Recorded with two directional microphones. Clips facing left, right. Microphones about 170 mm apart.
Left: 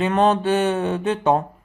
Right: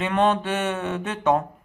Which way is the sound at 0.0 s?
35° left (ahead or behind).